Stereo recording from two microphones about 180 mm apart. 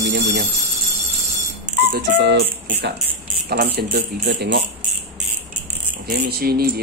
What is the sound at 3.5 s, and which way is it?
Speech, 60° right (ahead or behind).